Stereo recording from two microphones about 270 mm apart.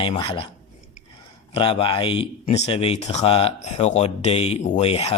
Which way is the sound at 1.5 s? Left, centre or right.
Centre.